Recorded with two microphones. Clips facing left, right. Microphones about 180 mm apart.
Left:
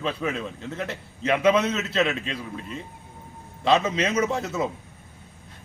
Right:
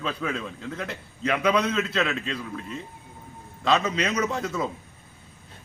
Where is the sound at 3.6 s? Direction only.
25° left (ahead or behind).